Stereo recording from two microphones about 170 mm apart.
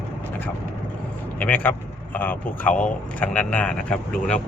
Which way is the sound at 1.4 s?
10° left (ahead or behind).